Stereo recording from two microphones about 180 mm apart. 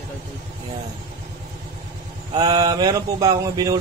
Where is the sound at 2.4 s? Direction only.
20° right (ahead or behind).